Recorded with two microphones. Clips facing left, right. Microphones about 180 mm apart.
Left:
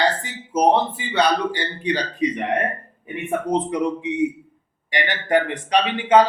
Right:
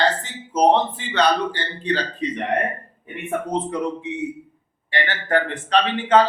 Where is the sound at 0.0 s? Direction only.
10° left (ahead or behind).